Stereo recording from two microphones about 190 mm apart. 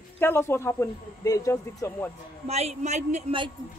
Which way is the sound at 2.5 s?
35° right (ahead or behind).